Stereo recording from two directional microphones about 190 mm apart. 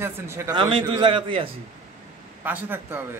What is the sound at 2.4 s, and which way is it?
Speech, 10° right (ahead or behind).